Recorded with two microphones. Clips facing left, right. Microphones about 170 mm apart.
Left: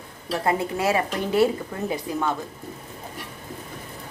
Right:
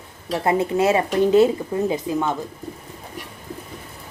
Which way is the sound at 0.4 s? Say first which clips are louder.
Right 5 dB; 25° right (ahead or behind).